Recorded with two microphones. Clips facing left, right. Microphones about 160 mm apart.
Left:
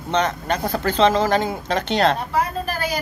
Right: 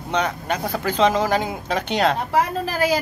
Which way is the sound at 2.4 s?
90° right.